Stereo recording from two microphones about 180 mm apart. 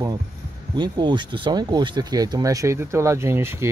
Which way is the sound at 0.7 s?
25° right (ahead or behind).